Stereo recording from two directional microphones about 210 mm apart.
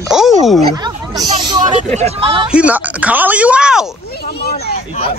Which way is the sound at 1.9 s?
30° right (ahead or behind).